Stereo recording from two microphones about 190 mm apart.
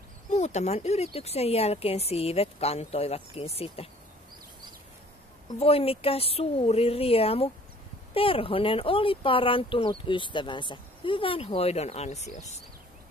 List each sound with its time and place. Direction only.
0.3 s speech: 35° left (ahead or behind)
5.6 s speech: 30° left (ahead or behind)